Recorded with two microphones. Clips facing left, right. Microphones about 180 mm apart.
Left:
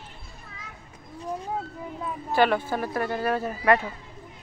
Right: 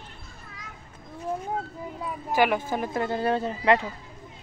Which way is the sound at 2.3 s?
15° right (ahead or behind).